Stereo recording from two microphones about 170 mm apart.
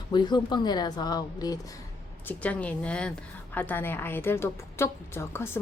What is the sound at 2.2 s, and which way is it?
A woman's voice, 10° left (ahead or behind).